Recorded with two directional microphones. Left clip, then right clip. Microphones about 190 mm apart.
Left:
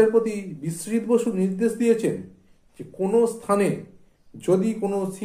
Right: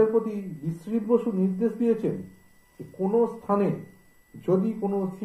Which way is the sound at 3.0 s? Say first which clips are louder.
Left 3 dB; 35° left (ahead or behind).